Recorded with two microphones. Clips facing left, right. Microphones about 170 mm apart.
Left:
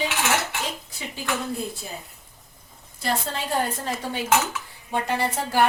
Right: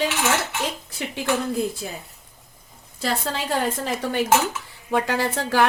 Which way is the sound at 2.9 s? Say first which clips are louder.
Right 2 dB; 90° right.